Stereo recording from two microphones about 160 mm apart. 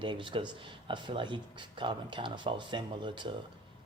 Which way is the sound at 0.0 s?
30° right (ahead or behind).